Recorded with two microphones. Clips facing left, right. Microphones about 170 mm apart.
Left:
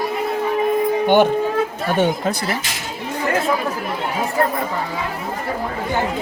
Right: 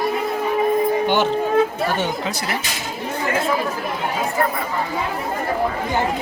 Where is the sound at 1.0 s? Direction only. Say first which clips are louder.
Left 4 dB; 55° left (ahead or behind).